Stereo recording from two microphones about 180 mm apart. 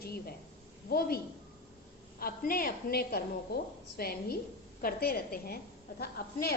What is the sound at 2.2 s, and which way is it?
A woman's voice, 55° left (ahead or behind).